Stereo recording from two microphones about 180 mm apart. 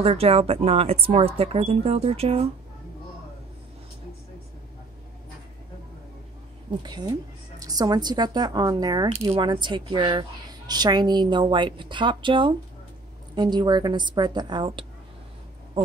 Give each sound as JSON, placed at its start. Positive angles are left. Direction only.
{"t": 0.0, "sound": "speech", "side_deg": -35}
{"t": 6.8, "sound": "a woman's voice", "side_deg": -20}